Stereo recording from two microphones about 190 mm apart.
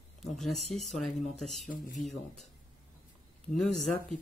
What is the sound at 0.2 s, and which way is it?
Speech, centre (ahead or behind).